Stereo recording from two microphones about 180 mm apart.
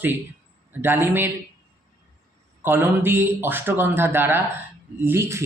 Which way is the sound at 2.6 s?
10° right (ahead or behind).